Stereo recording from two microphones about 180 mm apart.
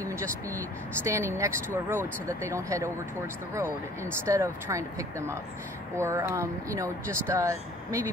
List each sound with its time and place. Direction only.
0.0 s speech: 15° right (ahead or behind)